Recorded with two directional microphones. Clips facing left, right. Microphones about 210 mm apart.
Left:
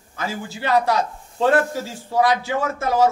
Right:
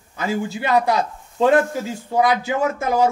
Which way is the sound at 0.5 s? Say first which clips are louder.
Left 1 dB; 15° right (ahead or behind).